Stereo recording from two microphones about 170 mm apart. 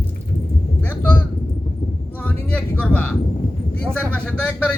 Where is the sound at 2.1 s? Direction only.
10° left (ahead or behind).